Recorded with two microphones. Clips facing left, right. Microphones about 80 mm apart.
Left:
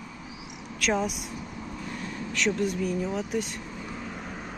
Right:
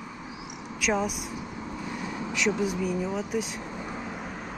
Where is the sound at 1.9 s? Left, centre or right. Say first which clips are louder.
Right 3 dB; centre.